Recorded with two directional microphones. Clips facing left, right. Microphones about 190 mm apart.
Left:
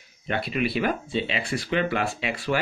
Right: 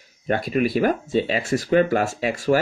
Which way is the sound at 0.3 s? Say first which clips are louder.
Right 5 dB; 45° right (ahead or behind).